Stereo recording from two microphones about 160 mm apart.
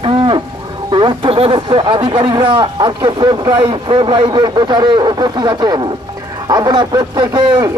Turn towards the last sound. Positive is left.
turn(degrees=-25)  # may be behind; listen again after turning